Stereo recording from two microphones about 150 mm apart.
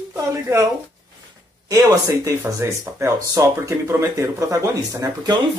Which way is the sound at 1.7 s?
20° right (ahead or behind).